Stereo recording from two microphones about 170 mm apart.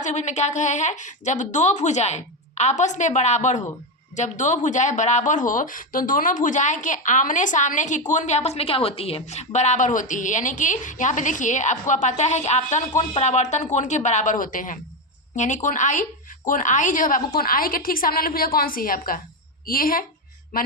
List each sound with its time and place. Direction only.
0.0 s a woman's voice: 45° left (ahead or behind)